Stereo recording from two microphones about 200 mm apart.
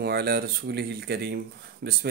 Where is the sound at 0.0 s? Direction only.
50° right (ahead or behind).